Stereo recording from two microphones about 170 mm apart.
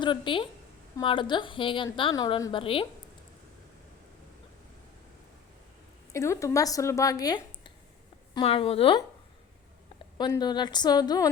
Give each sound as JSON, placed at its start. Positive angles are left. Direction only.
{"t": 0.0, "sound": "a woman's voice", "side_deg": 30}
{"t": 6.1, "sound": "a woman's voice", "side_deg": 15}
{"t": 10.2, "sound": "a woman's voice", "side_deg": 25}